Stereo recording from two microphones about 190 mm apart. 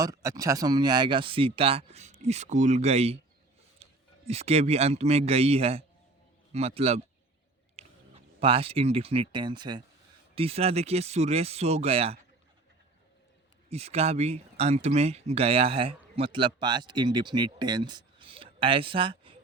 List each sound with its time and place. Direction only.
0.0 s speech: 15° right (ahead or behind); by 3.2 s 35° right (ahead or behind)
3.8 s a sound: 30° right (ahead or behind)
4.3 s speech: 35° right (ahead or behind)
13.7 s speech: 35° right (ahead or behind)